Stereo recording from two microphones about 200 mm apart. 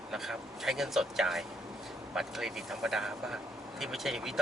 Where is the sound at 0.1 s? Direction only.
Centre (ahead or behind).